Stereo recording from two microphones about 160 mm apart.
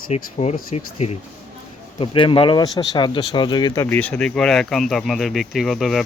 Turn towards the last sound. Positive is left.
turn(degrees=0)  # may be behind; listen again after turning